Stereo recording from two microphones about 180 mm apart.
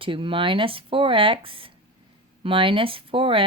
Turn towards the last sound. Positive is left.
turn(degrees=-30)  # may be behind; listen again after turning